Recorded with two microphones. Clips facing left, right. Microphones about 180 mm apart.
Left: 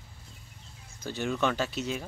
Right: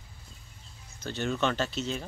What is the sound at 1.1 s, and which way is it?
Speech, 5° left (ahead or behind).